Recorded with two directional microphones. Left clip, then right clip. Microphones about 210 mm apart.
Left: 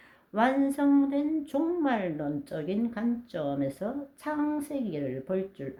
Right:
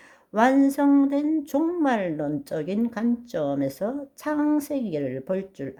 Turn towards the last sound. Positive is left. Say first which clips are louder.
# right 3 dB
turn(degrees=-45)  # may be behind; listen again after turning